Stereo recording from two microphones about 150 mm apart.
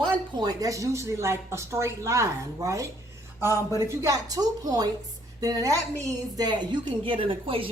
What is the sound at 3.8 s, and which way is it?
A woman's voice, 20° right (ahead or behind).